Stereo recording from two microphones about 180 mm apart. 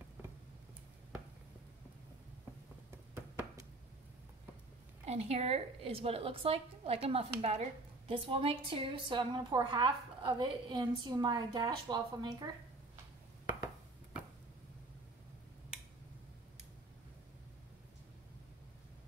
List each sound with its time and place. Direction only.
5.0 s a woman's voice: 35° right (ahead or behind)